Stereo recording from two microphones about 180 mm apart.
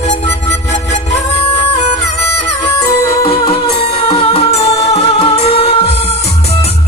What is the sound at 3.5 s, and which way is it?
Music, 30° left (ahead or behind).